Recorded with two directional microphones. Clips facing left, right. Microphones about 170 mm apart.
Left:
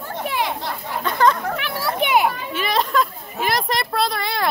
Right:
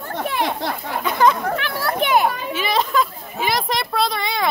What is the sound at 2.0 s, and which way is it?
Speech, 10° left (ahead or behind).